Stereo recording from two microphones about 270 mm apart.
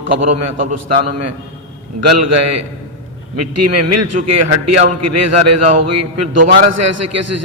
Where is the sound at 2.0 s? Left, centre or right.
Right.